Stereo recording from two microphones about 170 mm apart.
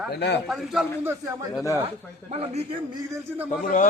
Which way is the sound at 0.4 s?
Centre (ahead or behind).